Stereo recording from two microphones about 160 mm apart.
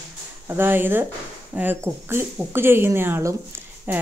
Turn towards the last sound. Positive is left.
turn(degrees=-10)  # may be behind; listen again after turning